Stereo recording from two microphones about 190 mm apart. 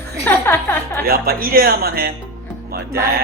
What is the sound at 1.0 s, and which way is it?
Speech, 55° right (ahead or behind).